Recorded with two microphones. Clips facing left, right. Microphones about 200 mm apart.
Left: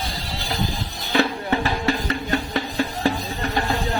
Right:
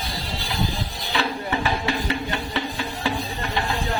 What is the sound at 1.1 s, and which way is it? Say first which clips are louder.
Music: left 5 dB; 45° left (ahead or behind).